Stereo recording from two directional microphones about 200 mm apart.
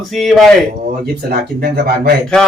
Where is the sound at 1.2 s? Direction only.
50° right (ahead or behind).